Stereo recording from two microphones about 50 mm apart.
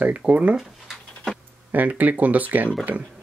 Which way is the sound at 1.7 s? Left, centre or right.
Right.